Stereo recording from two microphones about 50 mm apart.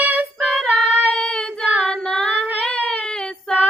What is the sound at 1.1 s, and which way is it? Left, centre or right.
Female singing, centre.